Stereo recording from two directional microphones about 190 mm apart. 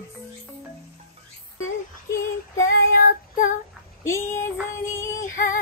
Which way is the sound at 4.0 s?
15° left (ahead or behind).